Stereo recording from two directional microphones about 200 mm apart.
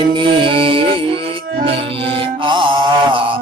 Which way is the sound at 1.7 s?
30° right (ahead or behind).